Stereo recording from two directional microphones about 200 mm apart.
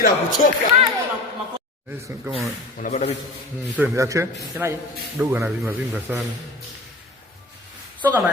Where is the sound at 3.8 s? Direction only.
15° right (ahead or behind).